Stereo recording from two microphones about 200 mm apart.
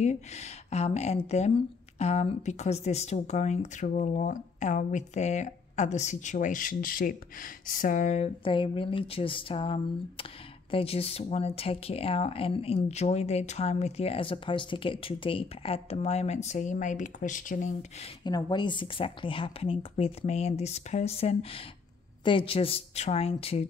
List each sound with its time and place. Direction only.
0.0 s speech: 35° left (ahead or behind)
18.2 s speech: 20° left (ahead or behind)